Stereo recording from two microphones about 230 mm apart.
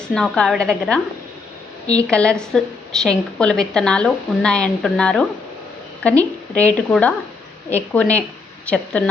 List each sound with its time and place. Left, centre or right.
0.1 s a woman's voice: centre